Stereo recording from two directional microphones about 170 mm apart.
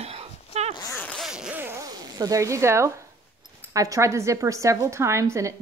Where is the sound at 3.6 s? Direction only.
20° right (ahead or behind).